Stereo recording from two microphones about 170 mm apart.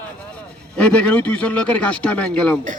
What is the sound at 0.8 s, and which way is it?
A man's voice, 5° left (ahead or behind).